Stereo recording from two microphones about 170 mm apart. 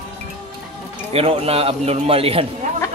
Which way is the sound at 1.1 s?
35° right (ahead or behind).